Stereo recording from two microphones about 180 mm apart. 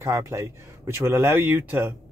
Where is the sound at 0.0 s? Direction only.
15° right (ahead or behind).